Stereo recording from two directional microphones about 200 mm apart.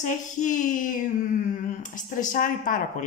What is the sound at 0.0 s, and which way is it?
A woman's voice, 40° left (ahead or behind).